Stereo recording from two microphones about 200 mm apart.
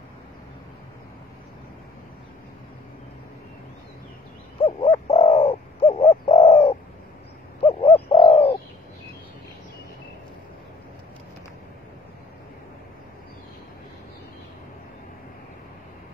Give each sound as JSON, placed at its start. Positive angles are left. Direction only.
{"t": 4.6, "sound": "bird", "side_deg": 30}